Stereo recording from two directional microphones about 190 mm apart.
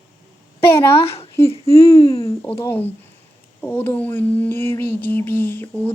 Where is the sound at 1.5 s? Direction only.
30° left (ahead or behind).